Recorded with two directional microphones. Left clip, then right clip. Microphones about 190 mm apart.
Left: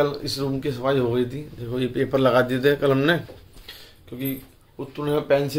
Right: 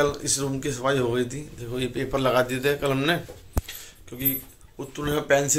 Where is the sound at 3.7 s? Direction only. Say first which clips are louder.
Even; 10° left (ahead or behind).